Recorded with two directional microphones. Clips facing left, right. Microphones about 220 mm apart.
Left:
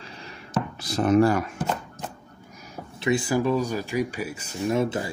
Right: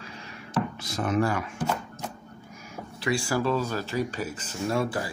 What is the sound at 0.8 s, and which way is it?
Speech, 35° left (ahead or behind).